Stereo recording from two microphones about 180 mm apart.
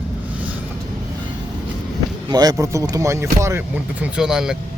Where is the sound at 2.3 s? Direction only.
20° right (ahead or behind).